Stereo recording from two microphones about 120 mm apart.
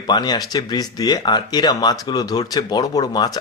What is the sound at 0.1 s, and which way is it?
Speech, 35° left (ahead or behind).